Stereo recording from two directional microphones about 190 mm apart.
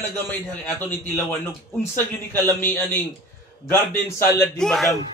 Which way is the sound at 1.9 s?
10° left (ahead or behind).